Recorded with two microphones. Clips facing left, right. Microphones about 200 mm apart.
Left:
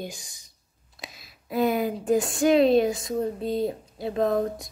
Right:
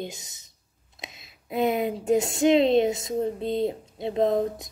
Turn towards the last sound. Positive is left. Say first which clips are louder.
# right 1 dB
turn(degrees=-20)  # may be behind; listen again after turning